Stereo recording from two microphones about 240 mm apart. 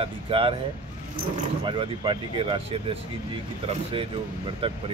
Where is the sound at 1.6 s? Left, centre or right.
Right.